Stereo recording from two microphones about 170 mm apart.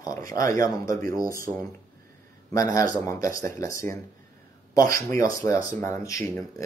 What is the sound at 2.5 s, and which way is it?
A man's voice, 20° left (ahead or behind).